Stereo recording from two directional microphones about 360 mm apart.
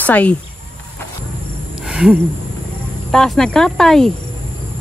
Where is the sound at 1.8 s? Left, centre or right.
Centre.